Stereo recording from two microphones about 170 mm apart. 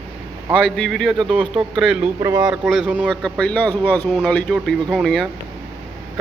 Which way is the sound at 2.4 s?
Centre (ahead or behind).